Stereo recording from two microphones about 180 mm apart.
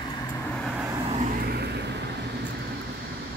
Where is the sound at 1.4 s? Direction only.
60° right (ahead or behind).